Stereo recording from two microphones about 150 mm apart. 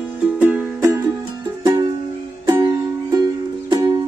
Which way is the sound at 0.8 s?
20° right (ahead or behind).